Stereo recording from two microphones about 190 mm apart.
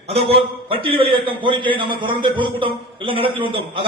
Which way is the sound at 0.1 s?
30° right (ahead or behind).